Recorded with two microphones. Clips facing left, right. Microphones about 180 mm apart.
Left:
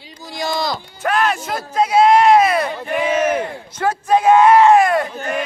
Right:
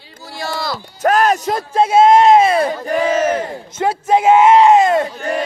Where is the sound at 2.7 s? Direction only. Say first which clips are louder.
Right 3 dB; 40° right (ahead or behind).